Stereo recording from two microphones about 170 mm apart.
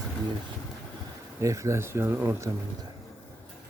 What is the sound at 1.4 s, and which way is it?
Speech, 15° right (ahead or behind).